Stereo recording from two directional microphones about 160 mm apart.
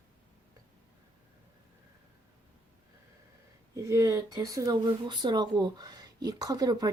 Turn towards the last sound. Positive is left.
turn(degrees=-25)  # may be behind; listen again after turning